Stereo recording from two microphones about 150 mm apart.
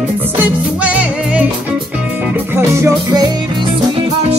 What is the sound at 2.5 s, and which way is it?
Music, 20° right (ahead or behind).